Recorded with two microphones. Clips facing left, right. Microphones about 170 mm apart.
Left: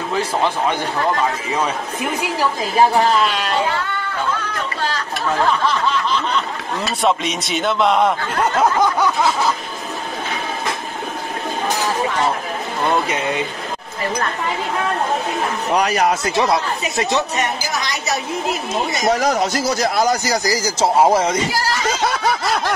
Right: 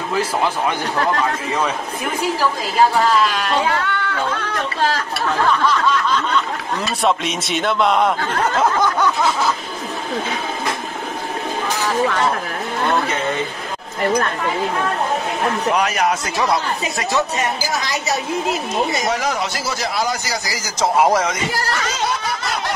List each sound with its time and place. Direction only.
3.8 s singing: 70° right (ahead or behind)
7.0 s speech: centre (ahead or behind)
15.7 s speech: 35° left (ahead or behind)
19.0 s speech: 40° left (ahead or behind)